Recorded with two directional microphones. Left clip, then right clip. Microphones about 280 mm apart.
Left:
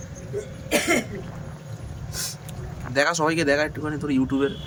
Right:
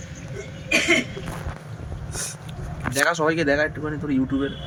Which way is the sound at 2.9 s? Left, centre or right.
Centre.